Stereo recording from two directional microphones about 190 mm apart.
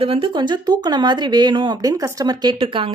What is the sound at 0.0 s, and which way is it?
Speech, 30° right (ahead or behind).